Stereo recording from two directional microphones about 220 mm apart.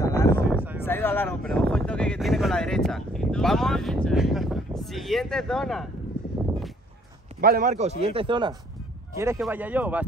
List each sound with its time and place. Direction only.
0.0 s a sound: 15° left (ahead or behind)
0.8 s speech: 10° left (ahead or behind)
7.3 s a man's voice: 40° right (ahead or behind); by 10.0 s 5° right (ahead or behind)